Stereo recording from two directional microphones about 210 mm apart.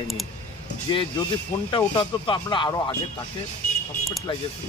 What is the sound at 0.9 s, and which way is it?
Speech, 25° left (ahead or behind).